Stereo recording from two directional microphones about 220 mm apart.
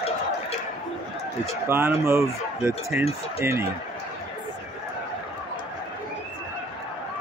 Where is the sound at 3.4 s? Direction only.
10° right (ahead or behind).